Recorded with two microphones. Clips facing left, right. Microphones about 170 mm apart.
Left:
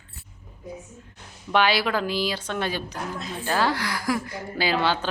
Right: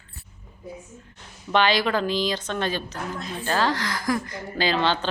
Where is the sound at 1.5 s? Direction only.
10° left (ahead or behind).